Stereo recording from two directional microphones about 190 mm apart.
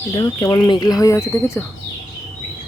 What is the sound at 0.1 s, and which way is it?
Speech, 25° left (ahead or behind).